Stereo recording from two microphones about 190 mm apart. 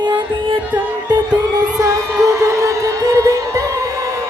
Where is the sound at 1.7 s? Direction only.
15° right (ahead or behind).